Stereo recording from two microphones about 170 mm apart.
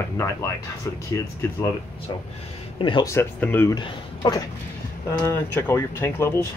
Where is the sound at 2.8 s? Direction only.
30° left (ahead or behind).